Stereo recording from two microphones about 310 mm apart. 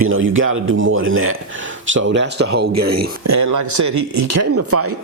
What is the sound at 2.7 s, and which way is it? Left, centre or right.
A man's voice, right.